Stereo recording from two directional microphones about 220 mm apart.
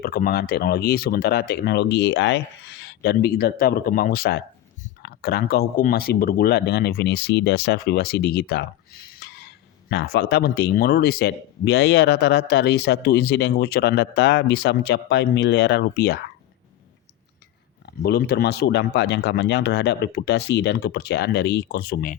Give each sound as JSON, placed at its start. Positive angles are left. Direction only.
{"t": 0.0, "sound": "speech", "side_deg": 45}
{"t": 9.2, "sound": "a sound", "side_deg": 50}
{"t": 9.9, "sound": "speech", "side_deg": 50}
{"t": 18.0, "sound": "speech", "side_deg": 45}